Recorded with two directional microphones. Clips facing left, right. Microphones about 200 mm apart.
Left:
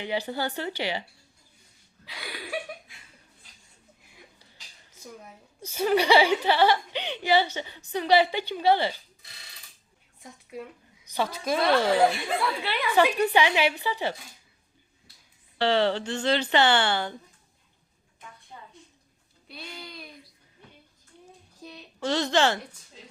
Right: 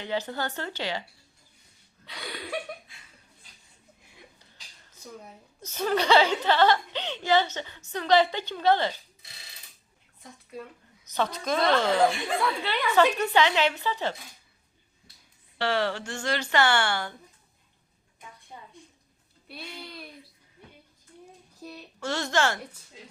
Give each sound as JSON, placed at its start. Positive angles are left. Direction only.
{"t": 0.0, "sound": "speech", "side_deg": 15}
{"t": 2.0, "sound": "a sound", "side_deg": 5}
{"t": 5.6, "sound": "speech", "side_deg": 10}
{"t": 10.6, "sound": "speech", "side_deg": 10}
{"t": 15.6, "sound": "speech", "side_deg": 25}
{"t": 19.5, "sound": "a child's voice", "side_deg": -5}
{"t": 21.6, "sound": "a sound", "side_deg": -10}
{"t": 22.0, "sound": "speech", "side_deg": 20}